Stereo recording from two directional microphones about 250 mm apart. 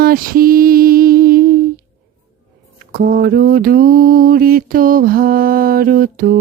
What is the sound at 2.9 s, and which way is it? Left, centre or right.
Mantra, right.